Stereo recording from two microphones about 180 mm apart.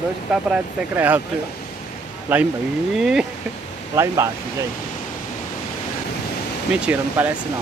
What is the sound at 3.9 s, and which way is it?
Speech, 15° right (ahead or behind).